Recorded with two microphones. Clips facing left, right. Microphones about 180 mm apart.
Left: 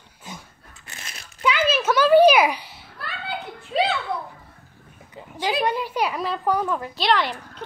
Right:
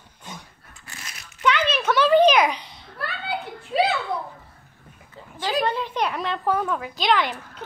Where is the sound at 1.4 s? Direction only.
5° left (ahead or behind).